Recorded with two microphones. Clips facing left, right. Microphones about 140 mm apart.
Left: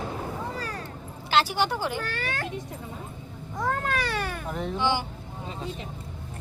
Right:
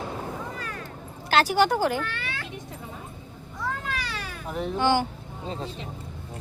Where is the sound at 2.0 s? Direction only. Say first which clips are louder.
Left 1 dB; 40° left (ahead or behind).